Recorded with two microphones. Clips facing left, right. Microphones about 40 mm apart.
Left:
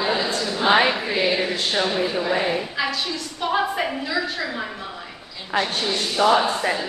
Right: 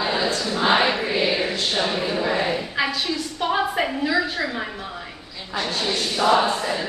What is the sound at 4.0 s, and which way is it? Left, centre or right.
Speech, centre.